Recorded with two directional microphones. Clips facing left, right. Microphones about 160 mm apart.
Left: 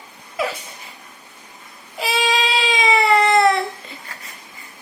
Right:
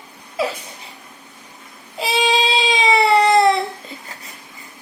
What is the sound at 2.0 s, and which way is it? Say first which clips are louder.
Baby cry: right 2 dB; 25° right (ahead or behind).